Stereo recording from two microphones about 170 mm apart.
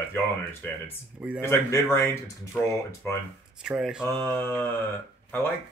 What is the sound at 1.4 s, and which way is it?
Speech, 15° left (ahead or behind).